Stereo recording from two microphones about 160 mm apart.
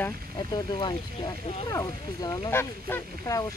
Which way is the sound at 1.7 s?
20° left (ahead or behind).